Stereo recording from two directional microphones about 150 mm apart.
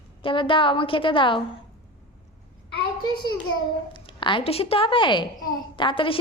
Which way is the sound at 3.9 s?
35° left (ahead or behind).